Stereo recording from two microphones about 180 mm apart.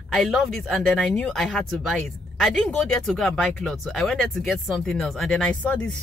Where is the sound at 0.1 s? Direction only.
Centre (ahead or behind).